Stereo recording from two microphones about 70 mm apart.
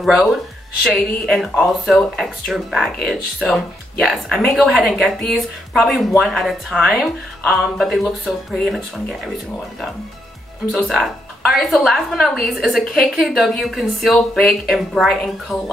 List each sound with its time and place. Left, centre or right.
0.0 s speech: centre
10.8 s speech: centre